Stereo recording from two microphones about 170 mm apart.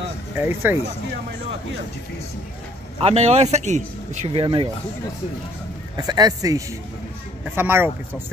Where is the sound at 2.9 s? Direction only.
35° right (ahead or behind).